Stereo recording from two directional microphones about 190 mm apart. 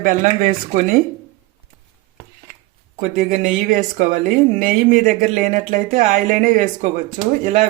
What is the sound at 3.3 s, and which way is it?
Speech, 40° right (ahead or behind).